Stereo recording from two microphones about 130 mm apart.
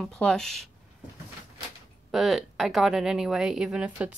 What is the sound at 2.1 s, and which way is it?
A woman's voice, centre (ahead or behind).